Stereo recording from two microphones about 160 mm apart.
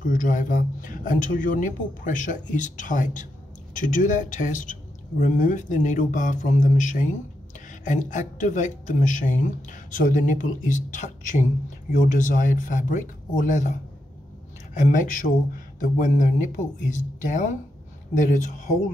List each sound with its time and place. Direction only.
0.0 s speech: 55° left (ahead or behind)